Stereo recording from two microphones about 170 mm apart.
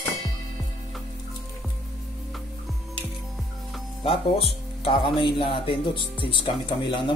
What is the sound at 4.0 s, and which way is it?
Speech, 30° left (ahead or behind).